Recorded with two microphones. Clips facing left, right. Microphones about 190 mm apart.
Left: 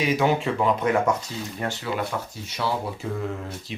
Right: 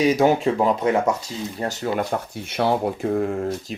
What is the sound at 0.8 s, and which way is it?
Speech, 25° right (ahead or behind).